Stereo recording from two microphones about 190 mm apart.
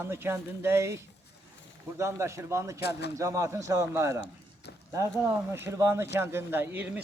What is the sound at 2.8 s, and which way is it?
Speech, 60° left (ahead or behind).